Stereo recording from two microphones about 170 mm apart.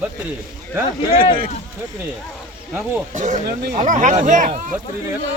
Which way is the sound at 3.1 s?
45° right (ahead or behind).